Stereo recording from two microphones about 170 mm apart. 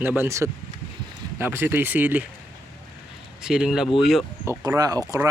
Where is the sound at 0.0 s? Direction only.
10° right (ahead or behind).